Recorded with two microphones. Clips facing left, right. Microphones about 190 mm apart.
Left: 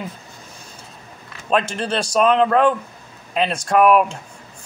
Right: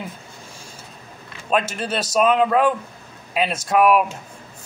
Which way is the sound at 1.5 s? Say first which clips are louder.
Left 2 dB; 5° right (ahead or behind).